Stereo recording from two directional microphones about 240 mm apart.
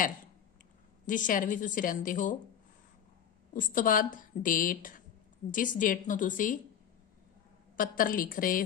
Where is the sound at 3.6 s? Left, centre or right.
Left.